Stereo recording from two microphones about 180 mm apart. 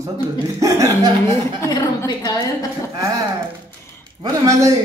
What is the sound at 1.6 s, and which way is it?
Speech, 20° left (ahead or behind).